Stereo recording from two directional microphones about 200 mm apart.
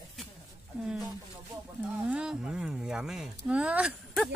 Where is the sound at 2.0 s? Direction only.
5° right (ahead or behind).